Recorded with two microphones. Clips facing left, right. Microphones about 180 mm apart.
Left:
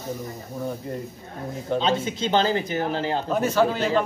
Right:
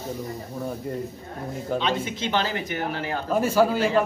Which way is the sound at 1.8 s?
30° left (ahead or behind).